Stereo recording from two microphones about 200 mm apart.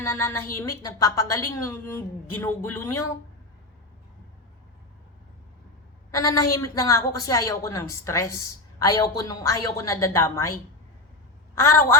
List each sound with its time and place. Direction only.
0.0 s a woman's voice: 10° left (ahead or behind)
6.1 s a woman's voice: 15° left (ahead or behind)